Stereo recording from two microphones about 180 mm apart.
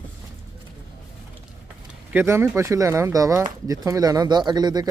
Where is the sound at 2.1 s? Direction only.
10° right (ahead or behind).